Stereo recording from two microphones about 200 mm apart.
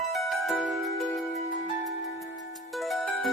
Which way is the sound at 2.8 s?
Centre (ahead or behind).